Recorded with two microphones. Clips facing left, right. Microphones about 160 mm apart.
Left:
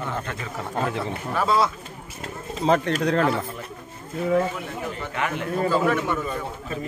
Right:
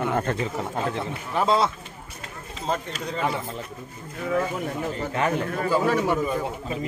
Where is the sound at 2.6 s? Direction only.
70° left (ahead or behind).